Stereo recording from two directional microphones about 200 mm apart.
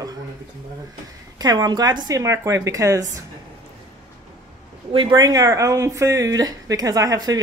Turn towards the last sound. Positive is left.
turn(degrees=-20)  # may be behind; listen again after turning